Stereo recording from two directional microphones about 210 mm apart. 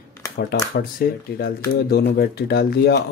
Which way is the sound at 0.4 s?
45° left (ahead or behind).